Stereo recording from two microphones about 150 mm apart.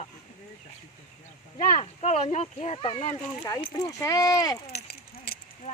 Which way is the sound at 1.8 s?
45° left (ahead or behind).